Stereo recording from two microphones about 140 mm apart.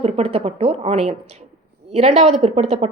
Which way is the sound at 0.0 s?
45° right (ahead or behind).